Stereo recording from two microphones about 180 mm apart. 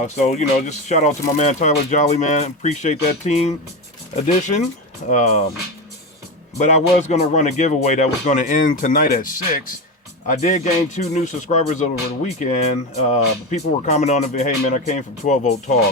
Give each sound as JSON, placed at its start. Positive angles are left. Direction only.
{"t": 0.0, "sound": "speech", "side_deg": 40}
{"t": 6.6, "sound": "speech", "side_deg": 40}